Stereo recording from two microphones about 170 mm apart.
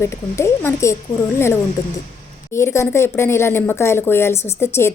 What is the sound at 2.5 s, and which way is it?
Speech, 15° left (ahead or behind).